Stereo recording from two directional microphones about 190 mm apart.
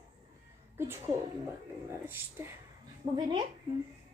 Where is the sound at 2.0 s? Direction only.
10° right (ahead or behind).